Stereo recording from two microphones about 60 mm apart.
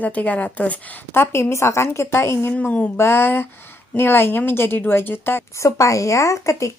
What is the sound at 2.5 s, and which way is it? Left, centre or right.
Speech, left.